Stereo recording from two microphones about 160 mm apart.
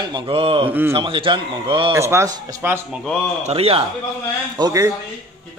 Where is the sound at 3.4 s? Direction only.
35° right (ahead or behind).